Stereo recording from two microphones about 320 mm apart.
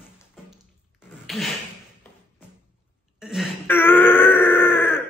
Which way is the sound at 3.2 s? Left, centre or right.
Centre.